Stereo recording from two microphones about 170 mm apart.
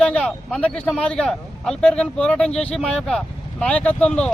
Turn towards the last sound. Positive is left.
turn(degrees=5)  # may be behind; listen again after turning